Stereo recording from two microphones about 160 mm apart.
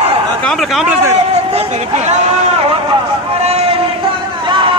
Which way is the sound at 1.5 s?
45° right (ahead or behind).